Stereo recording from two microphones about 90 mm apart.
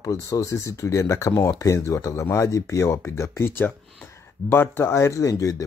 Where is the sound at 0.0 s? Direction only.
35° left (ahead or behind).